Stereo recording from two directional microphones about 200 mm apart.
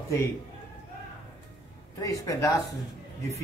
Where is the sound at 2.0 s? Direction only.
15° left (ahead or behind).